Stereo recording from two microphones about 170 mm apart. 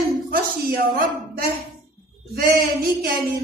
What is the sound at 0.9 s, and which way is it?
A woman's voice, 65° right (ahead or behind).